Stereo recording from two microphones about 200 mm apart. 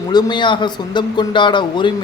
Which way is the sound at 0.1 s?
20° left (ahead or behind).